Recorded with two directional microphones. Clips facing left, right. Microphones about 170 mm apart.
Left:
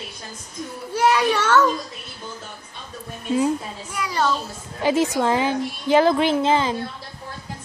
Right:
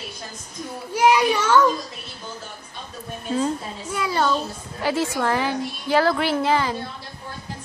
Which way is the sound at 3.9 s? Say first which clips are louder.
Right 4 dB; 25° right (ahead or behind).